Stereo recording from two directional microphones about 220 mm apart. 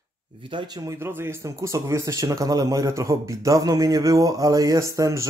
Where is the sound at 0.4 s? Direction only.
20° right (ahead or behind).